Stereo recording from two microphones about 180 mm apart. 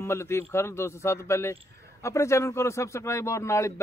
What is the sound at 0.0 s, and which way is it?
Speech, 15° left (ahead or behind).